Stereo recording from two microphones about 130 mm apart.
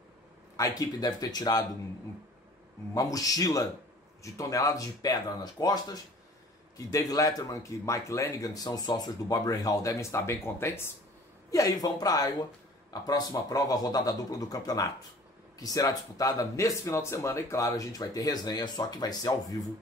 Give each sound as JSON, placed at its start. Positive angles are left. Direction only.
{"t": 0.6, "sound": "speech", "side_deg": 30}
{"t": 2.9, "sound": "speech", "side_deg": 25}